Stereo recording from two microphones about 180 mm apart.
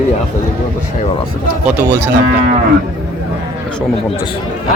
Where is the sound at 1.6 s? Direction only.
10° right (ahead or behind).